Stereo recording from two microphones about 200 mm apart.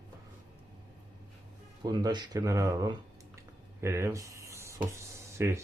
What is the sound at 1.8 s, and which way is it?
Speech, 20° right (ahead or behind).